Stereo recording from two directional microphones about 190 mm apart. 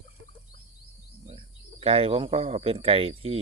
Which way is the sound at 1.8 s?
30° right (ahead or behind).